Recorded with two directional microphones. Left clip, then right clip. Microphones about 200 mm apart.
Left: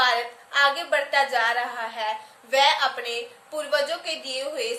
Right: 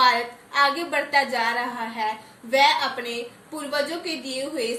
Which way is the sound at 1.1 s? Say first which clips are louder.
Right 1 dB; 15° left (ahead or behind).